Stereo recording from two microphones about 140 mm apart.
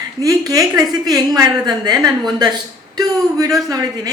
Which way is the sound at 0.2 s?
25° right (ahead or behind).